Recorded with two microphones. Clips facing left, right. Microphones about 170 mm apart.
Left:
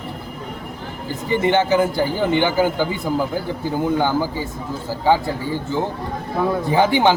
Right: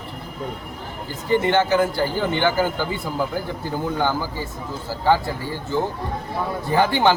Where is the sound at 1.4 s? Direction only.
15° left (ahead or behind).